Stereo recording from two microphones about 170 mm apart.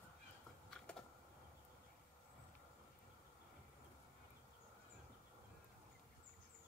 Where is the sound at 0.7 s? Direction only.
5° left (ahead or behind).